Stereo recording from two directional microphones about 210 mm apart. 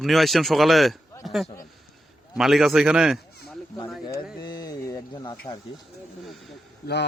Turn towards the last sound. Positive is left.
turn(degrees=50)  # may be behind; listen again after turning